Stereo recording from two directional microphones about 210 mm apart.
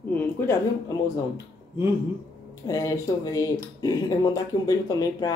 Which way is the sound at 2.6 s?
15° left (ahead or behind).